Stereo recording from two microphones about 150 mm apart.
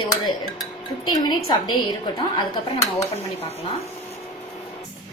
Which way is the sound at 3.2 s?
40° left (ahead or behind).